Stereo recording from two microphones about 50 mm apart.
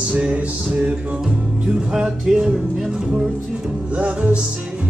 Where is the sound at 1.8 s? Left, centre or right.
Centre.